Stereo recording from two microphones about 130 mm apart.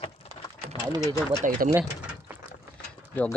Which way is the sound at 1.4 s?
85° right.